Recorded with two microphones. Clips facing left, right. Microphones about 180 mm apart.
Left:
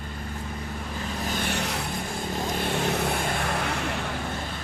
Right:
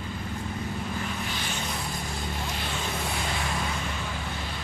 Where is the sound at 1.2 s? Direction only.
45° left (ahead or behind).